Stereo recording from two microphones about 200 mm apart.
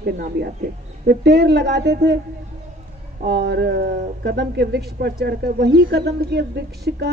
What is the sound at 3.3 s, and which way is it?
Speech, 55° right (ahead or behind).